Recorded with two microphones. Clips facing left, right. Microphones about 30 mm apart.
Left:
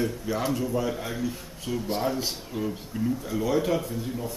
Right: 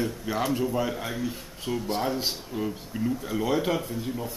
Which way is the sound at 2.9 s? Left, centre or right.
Centre.